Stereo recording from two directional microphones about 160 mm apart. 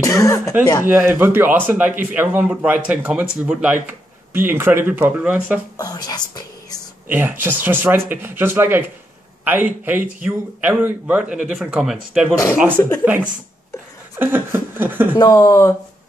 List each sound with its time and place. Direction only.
0.0 s speech: 20° left (ahead or behind)
0.8 s speech: 10° right (ahead or behind)
5.8 s speech: 25° left (ahead or behind)
7.1 s speech: 10° right (ahead or behind)
15.1 s speech: 20° left (ahead or behind)